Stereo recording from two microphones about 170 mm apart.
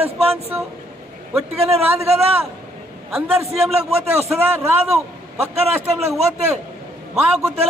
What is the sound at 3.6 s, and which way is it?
Speech, 35° right (ahead or behind).